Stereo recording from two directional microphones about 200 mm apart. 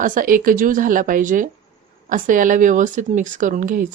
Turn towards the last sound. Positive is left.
turn(degrees=-40)  # may be behind; listen again after turning